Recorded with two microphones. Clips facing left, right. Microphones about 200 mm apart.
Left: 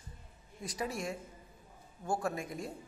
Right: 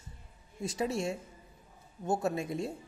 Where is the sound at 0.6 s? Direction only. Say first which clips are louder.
Right 5 dB; 25° right (ahead or behind).